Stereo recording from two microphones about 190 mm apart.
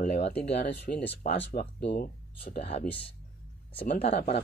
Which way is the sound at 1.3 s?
30° left (ahead or behind).